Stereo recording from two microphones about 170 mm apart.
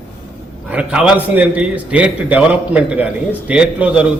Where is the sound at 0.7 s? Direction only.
5° right (ahead or behind).